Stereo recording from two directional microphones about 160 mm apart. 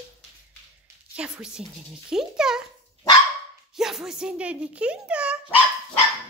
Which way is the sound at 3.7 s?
5° right (ahead or behind).